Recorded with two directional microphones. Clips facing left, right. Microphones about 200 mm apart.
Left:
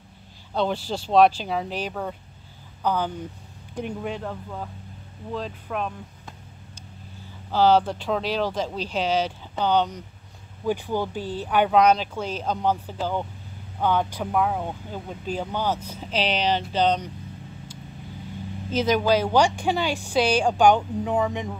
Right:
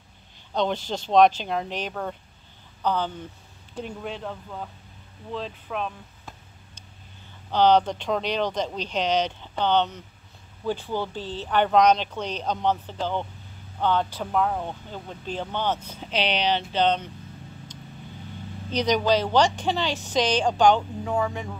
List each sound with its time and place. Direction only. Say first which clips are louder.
0.5 s speech: left 1 dB; 5° left (ahead or behind)
5.3 s a sound: left 1 dB; 5° left (ahead or behind)
7.5 s speech: even; 5° left (ahead or behind)
18.7 s speech: left 1 dB; 5° left (ahead or behind)